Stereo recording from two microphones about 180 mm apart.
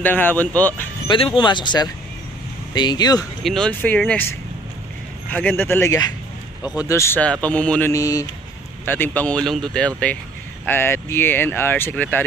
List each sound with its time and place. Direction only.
0.0 s speech: 10° left (ahead or behind)
1.0 s speech: 25° left (ahead or behind)
3.4 s speech: 5° left (ahead or behind)